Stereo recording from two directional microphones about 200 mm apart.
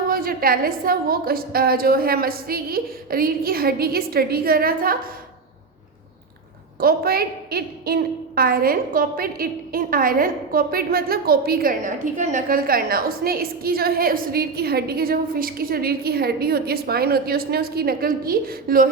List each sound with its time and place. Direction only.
0.1 s a woman's voice: 45° right (ahead or behind)
6.7 s a woman's voice: 50° right (ahead or behind)